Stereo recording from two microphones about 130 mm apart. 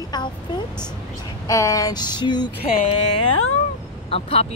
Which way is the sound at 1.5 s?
25° left (ahead or behind).